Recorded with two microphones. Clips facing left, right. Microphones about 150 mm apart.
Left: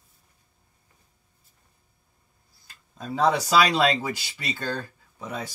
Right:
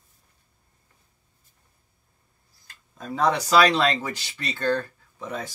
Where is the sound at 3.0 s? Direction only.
10° left (ahead or behind).